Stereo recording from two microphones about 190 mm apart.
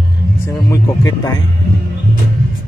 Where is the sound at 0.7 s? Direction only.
15° left (ahead or behind).